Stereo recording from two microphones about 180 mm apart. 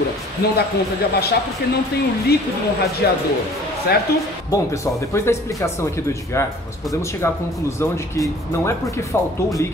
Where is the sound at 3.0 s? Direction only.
60° left (ahead or behind).